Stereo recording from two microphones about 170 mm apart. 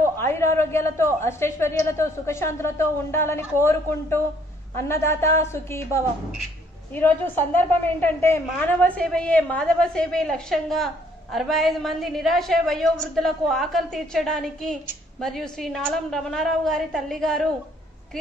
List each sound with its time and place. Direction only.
0.2 s a woman's voice: 15° left (ahead or behind)
6.9 s a woman's voice: 10° left (ahead or behind)